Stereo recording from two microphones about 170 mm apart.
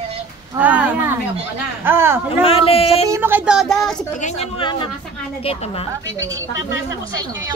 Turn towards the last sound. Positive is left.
turn(degrees=-20)  # may be behind; listen again after turning